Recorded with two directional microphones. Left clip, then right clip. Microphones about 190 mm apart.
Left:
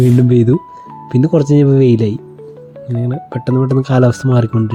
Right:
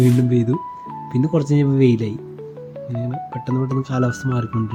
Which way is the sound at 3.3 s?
30° left (ahead or behind).